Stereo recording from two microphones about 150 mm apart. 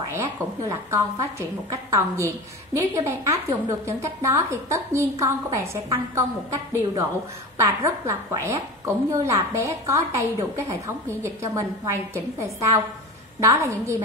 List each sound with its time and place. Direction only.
0.0 s a woman's voice: 25° right (ahead or behind)